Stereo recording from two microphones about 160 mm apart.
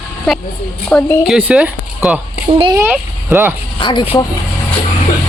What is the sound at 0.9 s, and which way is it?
Speech, 10° left (ahead or behind).